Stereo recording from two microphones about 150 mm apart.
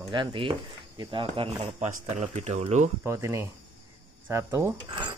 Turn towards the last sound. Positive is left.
turn(degrees=-30)  # may be behind; listen again after turning